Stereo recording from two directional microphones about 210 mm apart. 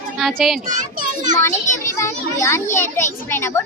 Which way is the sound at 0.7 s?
35° right (ahead or behind).